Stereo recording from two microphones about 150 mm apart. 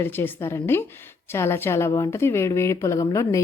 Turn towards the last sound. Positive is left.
turn(degrees=20)  # may be behind; listen again after turning